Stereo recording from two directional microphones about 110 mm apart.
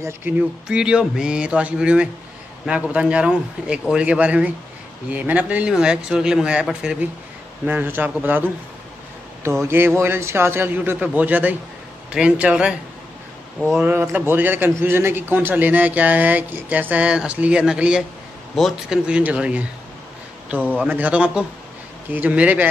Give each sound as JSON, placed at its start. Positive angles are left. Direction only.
{"t": 0.0, "sound": "a man's voice", "side_deg": -20}
{"t": 0.7, "sound": "a man's voice", "side_deg": -5}
{"t": 13.7, "sound": "a man's voice", "side_deg": -15}
{"t": 20.8, "sound": "a man's voice", "side_deg": -10}